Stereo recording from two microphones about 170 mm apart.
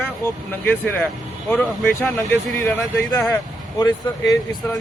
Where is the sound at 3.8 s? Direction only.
20° left (ahead or behind).